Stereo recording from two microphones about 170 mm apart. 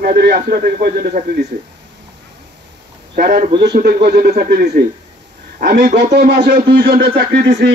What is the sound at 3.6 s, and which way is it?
A man's voice, 70° right (ahead or behind).